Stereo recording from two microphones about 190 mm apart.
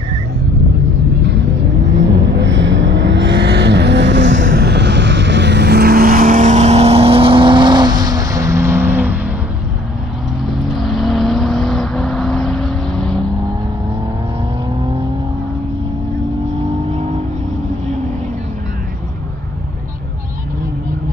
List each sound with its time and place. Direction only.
2.3 s vehicle: 70° right (ahead or behind)
4.5 s vehicle: 55° right (ahead or behind); by 9.3 s 10° right (ahead or behind)
10.4 s vehicle: centre (ahead or behind)
16.9 s vehicle: 35° right (ahead or behind)